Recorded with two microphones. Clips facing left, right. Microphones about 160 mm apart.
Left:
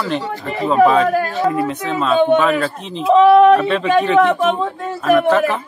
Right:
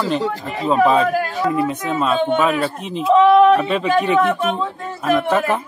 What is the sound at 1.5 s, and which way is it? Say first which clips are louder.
Speech: even; 20° right (ahead or behind).